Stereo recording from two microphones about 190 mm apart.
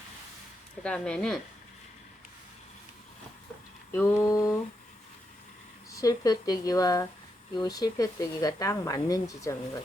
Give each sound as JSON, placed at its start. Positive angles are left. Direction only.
{"t": 0.8, "sound": "speech", "side_deg": 5}
{"t": 3.9, "sound": "mantra", "side_deg": 15}
{"t": 5.9, "sound": "speech", "side_deg": 20}